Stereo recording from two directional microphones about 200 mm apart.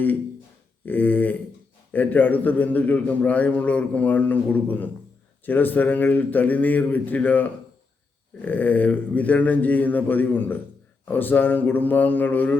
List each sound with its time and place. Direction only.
0.9 s a man's voice: 10° left (ahead or behind)